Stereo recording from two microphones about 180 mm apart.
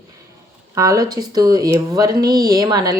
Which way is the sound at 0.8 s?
20° right (ahead or behind).